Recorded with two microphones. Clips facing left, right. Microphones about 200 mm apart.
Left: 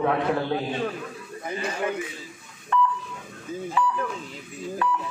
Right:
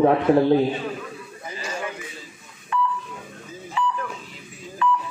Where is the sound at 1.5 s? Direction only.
60° left (ahead or behind).